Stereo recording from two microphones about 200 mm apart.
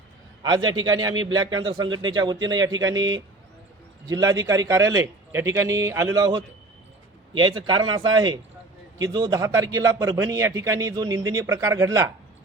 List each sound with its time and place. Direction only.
0.9 s a man's voice: 20° right (ahead or behind)